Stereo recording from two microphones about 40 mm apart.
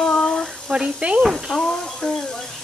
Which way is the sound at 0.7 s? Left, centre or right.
Right.